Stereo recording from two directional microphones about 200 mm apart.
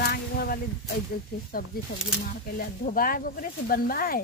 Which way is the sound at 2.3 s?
45° left (ahead or behind).